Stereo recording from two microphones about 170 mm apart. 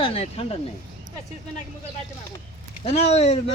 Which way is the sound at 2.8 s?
40° left (ahead or behind).